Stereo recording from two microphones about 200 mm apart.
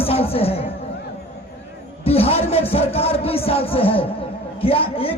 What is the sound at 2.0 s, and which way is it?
A man's voice, 30° left (ahead or behind).